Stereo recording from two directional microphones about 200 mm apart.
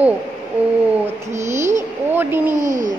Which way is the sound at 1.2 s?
15° right (ahead or behind).